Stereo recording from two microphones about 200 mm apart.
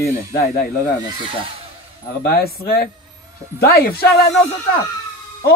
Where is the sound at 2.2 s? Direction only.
50° left (ahead or behind).